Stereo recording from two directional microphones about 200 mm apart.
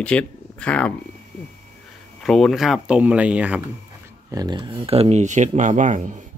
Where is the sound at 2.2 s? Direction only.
Centre (ahead or behind).